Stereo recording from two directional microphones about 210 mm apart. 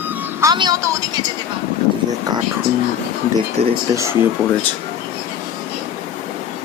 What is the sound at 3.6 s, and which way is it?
Speech, 30° right (ahead or behind).